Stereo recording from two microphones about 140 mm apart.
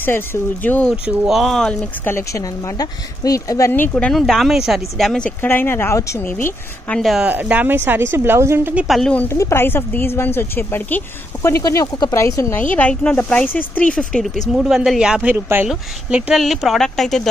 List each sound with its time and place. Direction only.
0.0 s speech: 15° left (ahead or behind)
1.0 s speech: 5° right (ahead or behind); by 7.0 s 15° left (ahead or behind)
7.0 s speech: centre (ahead or behind)
7.2 s speech: 10° right (ahead or behind)
8.8 s speech: centre (ahead or behind)
9.3 s speech: 20° left (ahead or behind); by 17.3 s centre (ahead or behind)